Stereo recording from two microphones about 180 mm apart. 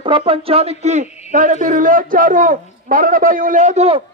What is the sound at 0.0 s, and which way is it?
A man's voice, 30° right (ahead or behind).